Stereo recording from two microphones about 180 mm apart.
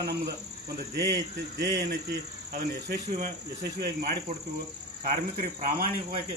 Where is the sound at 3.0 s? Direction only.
45° right (ahead or behind).